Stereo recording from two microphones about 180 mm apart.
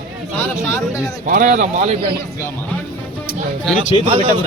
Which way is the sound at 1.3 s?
45° right (ahead or behind).